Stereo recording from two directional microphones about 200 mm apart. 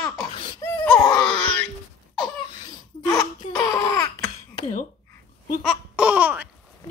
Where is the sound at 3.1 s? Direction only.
20° left (ahead or behind).